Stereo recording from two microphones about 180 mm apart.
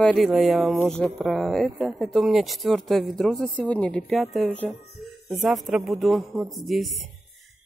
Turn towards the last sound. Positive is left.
turn(degrees=0)  # may be behind; listen again after turning